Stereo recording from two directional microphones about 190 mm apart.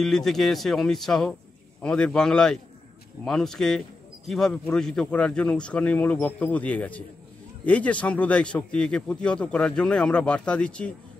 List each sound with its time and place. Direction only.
0.0 s a man's voice: centre (ahead or behind)